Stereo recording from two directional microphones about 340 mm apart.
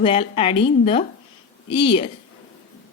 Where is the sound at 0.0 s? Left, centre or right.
Centre.